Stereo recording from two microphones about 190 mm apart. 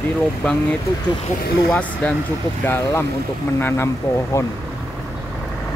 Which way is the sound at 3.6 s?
10° left (ahead or behind).